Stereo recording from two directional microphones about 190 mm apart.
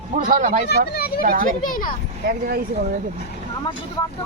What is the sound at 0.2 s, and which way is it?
Speech, 45° right (ahead or behind).